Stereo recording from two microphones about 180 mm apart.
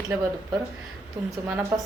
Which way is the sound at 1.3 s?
15° right (ahead or behind).